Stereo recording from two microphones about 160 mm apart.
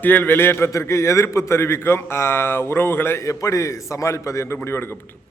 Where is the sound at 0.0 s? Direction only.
10° left (ahead or behind).